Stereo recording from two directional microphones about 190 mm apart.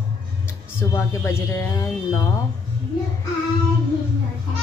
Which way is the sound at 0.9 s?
15° left (ahead or behind).